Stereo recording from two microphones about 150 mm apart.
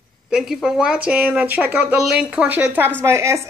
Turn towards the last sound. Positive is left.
turn(degrees=-20)  # may be behind; listen again after turning